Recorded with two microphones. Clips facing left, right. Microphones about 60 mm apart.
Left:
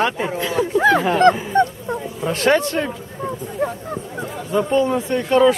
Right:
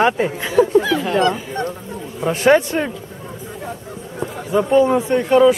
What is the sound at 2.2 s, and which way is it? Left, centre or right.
Speech, centre.